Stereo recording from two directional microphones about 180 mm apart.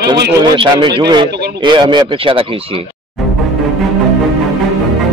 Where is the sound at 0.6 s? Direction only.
25° right (ahead or behind).